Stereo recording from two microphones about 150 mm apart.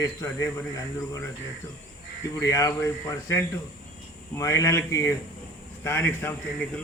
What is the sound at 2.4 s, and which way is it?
Speech, 20° left (ahead or behind).